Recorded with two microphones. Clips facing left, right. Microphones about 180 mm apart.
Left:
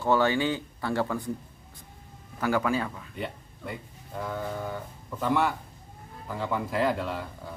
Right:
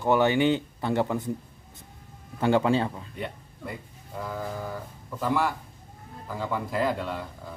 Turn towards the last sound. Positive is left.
turn(degrees=0)  # may be behind; listen again after turning